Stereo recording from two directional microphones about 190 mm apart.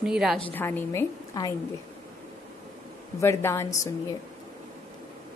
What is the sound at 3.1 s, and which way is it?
Speech, 15° left (ahead or behind).